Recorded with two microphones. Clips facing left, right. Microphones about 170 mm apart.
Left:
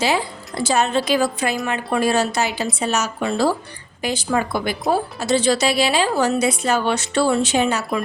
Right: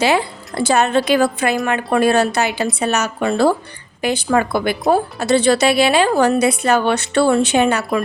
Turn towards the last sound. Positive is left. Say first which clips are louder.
# right 4 dB
turn(degrees=-60)  # may be behind; listen again after turning